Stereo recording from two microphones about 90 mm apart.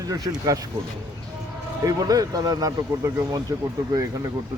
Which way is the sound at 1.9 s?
45° right (ahead or behind).